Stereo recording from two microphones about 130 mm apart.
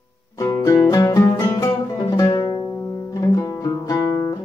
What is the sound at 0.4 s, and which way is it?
Music, 25° left (ahead or behind).